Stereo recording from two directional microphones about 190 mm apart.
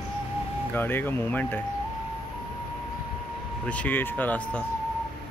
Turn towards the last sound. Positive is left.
turn(degrees=10)  # may be behind; listen again after turning